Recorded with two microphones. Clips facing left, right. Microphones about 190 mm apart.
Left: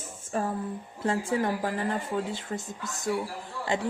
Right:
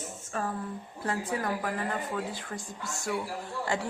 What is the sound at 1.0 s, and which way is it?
A woman's voice, 25° left (ahead or behind).